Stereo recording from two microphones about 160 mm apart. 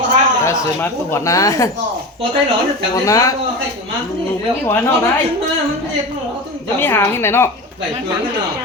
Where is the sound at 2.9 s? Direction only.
20° left (ahead or behind).